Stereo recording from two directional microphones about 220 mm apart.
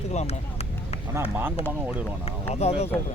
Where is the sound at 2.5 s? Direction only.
30° left (ahead or behind).